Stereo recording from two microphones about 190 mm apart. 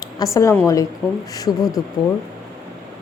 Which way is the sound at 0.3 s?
15° left (ahead or behind).